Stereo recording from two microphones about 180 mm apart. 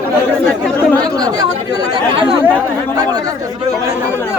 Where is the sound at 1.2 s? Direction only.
20° right (ahead or behind).